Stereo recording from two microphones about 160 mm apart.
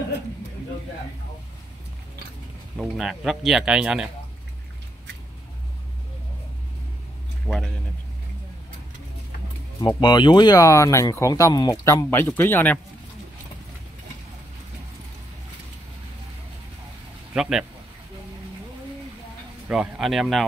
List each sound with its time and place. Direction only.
2.8 s speech: 5° right (ahead or behind)
7.4 s speech: 5° left (ahead or behind)
9.8 s speech: 30° left (ahead or behind); by 12.7 s 10° left (ahead or behind)
17.3 s speech: 5° right (ahead or behind)
19.7 s speech: 5° right (ahead or behind)